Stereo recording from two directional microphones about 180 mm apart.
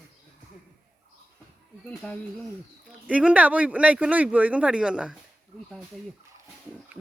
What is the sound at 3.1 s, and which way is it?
Speech, 5° right (ahead or behind).